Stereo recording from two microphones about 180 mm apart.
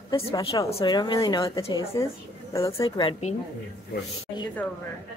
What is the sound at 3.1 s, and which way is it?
Speech, 35° left (ahead or behind).